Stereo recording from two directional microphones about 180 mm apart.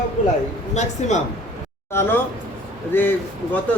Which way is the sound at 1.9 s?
10° left (ahead or behind).